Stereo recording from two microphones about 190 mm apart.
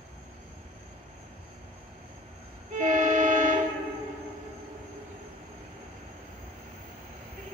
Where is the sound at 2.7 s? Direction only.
40° right (ahead or behind).